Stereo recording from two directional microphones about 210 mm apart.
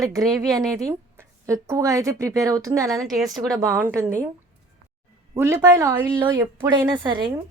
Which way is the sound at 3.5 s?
15° right (ahead or behind).